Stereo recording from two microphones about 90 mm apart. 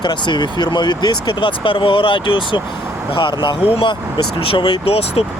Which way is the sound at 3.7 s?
90° left.